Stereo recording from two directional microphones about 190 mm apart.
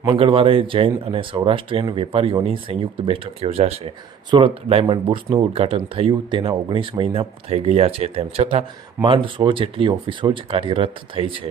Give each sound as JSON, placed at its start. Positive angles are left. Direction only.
{"t": 0.0, "sound": "speech", "side_deg": -25}